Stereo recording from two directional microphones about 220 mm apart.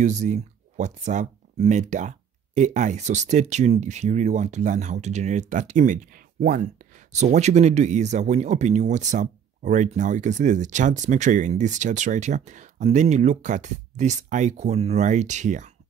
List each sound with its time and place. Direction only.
0.0 s speech: 30° right (ahead or behind)